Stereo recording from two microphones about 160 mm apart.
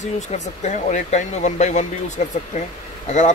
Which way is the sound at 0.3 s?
45° left (ahead or behind).